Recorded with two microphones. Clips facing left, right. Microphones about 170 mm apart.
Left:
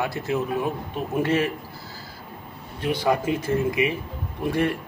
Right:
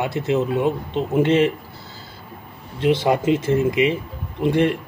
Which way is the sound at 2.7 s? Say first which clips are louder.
Right 5 dB; 20° right (ahead or behind).